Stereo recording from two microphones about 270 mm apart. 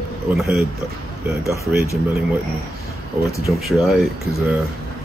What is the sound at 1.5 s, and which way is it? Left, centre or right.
Speech, centre.